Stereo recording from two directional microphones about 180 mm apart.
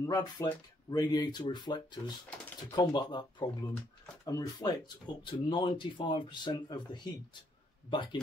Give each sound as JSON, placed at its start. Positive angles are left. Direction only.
{"t": 0.0, "sound": "speech", "side_deg": 20}